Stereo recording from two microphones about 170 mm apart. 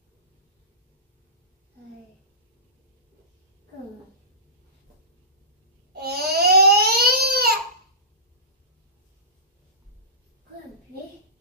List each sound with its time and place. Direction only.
5.9 s crying: 65° right (ahead or behind)